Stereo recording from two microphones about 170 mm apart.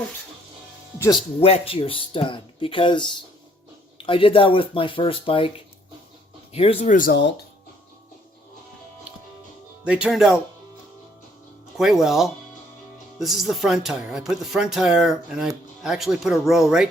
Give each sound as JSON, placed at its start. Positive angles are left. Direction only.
{"t": 1.4, "sound": "speech", "side_deg": 35}
{"t": 6.9, "sound": "speech", "side_deg": 55}
{"t": 9.8, "sound": "speech", "side_deg": -5}
{"t": 11.8, "sound": "speech", "side_deg": 0}